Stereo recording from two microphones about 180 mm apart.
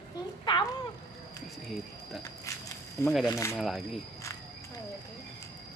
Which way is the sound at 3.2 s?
15° left (ahead or behind).